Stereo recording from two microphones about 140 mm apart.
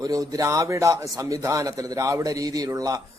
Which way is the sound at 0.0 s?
25° right (ahead or behind).